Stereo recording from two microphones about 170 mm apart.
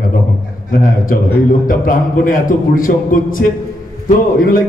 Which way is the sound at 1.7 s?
55° left (ahead or behind).